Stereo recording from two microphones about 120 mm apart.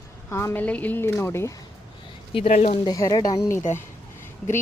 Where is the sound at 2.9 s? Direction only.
30° left (ahead or behind).